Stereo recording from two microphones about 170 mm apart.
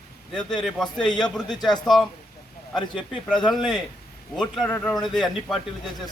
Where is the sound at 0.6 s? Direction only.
5° left (ahead or behind).